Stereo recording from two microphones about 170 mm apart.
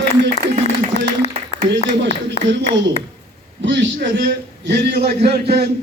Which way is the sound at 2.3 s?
90° right.